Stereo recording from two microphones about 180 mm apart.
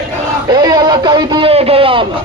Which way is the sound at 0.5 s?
20° right (ahead or behind).